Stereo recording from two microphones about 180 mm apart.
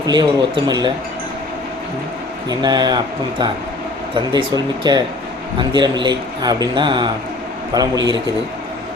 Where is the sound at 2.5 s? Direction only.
25° right (ahead or behind).